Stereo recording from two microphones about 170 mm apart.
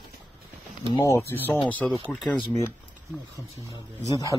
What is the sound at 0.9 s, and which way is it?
Speech, 15° left (ahead or behind).